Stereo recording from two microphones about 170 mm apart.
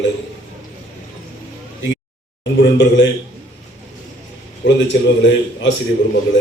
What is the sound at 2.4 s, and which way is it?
Speech, 90° left.